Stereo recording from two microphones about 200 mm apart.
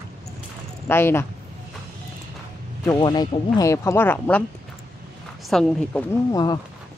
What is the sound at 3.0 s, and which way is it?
Speech, 20° left (ahead or behind).